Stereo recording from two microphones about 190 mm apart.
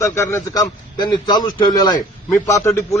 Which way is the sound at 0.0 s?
15° left (ahead or behind).